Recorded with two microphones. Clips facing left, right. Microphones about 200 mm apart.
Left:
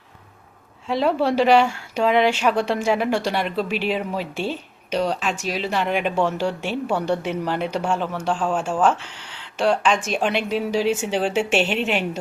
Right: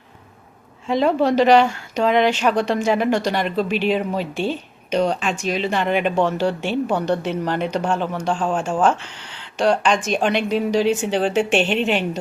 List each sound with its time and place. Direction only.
0.9 s speech: 5° left (ahead or behind)